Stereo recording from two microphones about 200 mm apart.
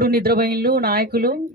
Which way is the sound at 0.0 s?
50° right (ahead or behind).